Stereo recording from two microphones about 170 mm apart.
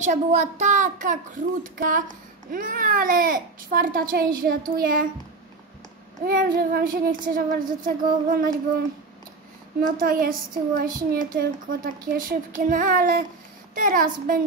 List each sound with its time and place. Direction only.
0.0 s a child's voice: 45° right (ahead or behind)
6.2 s a child's voice: 60° right (ahead or behind)
9.8 s a child's voice: 55° right (ahead or behind)